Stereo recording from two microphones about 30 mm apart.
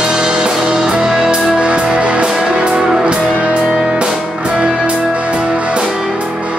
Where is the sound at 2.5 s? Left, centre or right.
Right.